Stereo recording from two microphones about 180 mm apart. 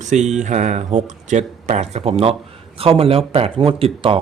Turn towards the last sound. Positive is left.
turn(degrees=-30)  # may be behind; listen again after turning